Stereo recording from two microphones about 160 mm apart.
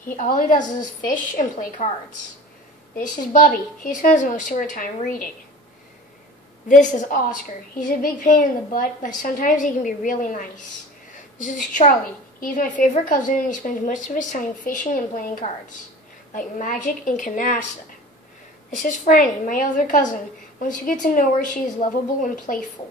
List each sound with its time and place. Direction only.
0.1 s a woman's voice: 60° left (ahead or behind)
3.0 s a woman's voice: 55° left (ahead or behind)
6.7 s a woman's voice: 50° left (ahead or behind)
12.4 s a woman's voice: 55° left (ahead or behind)
18.7 s a woman's voice: 50° left (ahead or behind)